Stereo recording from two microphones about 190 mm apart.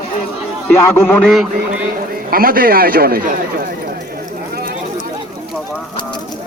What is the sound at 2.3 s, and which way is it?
A man's voice, 50° right (ahead or behind).